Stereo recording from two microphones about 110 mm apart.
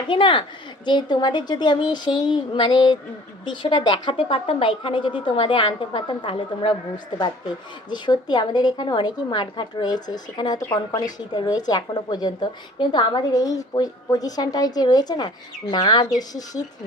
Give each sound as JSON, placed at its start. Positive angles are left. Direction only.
{"t": 0.1, "sound": "a woman's voice", "side_deg": 50}